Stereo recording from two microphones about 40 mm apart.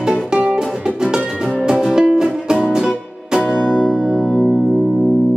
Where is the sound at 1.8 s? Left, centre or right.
Centre.